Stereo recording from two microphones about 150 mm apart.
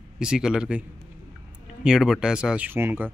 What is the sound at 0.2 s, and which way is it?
A man's voice, 5° right (ahead or behind).